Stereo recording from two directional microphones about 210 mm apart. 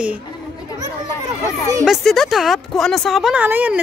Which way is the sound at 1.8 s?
Centre (ahead or behind).